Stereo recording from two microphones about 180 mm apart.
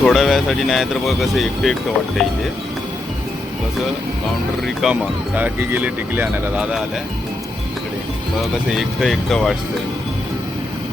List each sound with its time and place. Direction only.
0.0 s speech: centre (ahead or behind)
4.6 s speech: centre (ahead or behind)
9.0 s speech: centre (ahead or behind)